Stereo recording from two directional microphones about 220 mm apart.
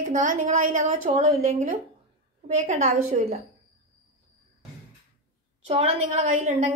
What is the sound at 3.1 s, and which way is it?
Speech, 30° right (ahead or behind).